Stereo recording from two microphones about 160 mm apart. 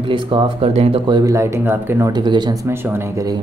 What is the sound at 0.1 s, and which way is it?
Speech, 35° right (ahead or behind).